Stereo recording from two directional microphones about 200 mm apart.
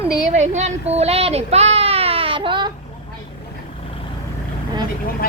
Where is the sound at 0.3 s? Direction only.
35° right (ahead or behind).